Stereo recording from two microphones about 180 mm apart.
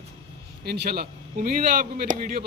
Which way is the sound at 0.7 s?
60° right (ahead or behind).